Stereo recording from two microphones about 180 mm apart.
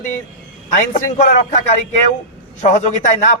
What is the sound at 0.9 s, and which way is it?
A man's voice, 40° left (ahead or behind).